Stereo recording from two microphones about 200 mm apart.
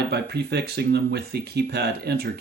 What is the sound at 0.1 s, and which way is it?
Speech, 55° right (ahead or behind).